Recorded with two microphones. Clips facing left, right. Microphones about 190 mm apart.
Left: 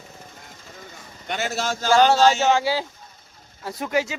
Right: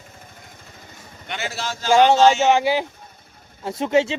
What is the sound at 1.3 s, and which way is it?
Speech, 45° left (ahead or behind).